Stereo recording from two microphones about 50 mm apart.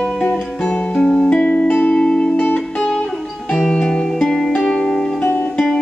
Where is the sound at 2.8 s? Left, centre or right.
Left.